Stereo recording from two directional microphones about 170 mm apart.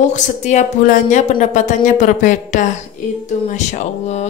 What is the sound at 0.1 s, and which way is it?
Speech, 45° left (ahead or behind).